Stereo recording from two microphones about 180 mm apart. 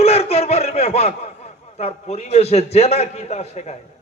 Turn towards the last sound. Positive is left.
turn(degrees=35)  # may be behind; listen again after turning